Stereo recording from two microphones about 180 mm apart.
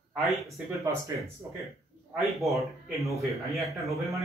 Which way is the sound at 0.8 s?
15° right (ahead or behind).